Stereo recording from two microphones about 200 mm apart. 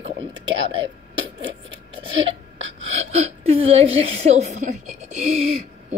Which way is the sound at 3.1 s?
30° right (ahead or behind).